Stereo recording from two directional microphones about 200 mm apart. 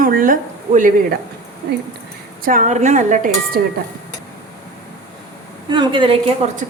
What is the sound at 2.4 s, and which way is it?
A woman's voice, 40° right (ahead or behind).